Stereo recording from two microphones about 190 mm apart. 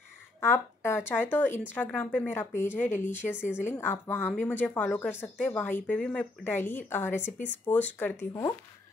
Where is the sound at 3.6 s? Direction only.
10° left (ahead or behind).